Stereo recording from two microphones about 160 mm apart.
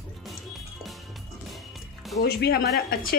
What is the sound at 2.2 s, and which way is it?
Speech, 85° left.